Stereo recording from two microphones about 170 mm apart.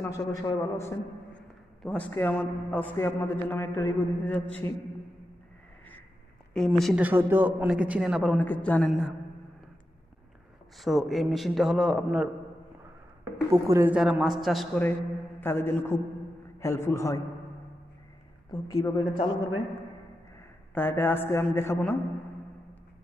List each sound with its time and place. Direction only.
0.0 s a man's voice: 20° left (ahead or behind)
1.8 s a man's voice: 5° left (ahead or behind)
6.5 s a man's voice: 5° left (ahead or behind)
7.0 s a man's voice: 10° right (ahead or behind); by 9.1 s 5° left (ahead or behind)
10.8 s a man's voice: centre (ahead or behind)
13.2 s a woman's voice: 20° right (ahead or behind)
13.9 s a man's voice: 5° right (ahead or behind)
15.4 s a man's voice: 15° left (ahead or behind)
18.5 s a woman's voice: 20° left (ahead or behind)
20.7 s a man's voice: 10° left (ahead or behind)